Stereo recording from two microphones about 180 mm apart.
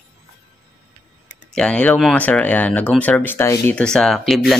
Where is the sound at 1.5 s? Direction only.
5° left (ahead or behind).